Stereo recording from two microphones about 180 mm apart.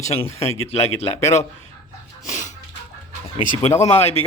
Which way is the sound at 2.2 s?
45° left (ahead or behind).